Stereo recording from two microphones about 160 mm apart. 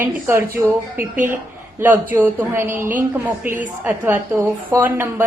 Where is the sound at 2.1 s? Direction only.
15° right (ahead or behind).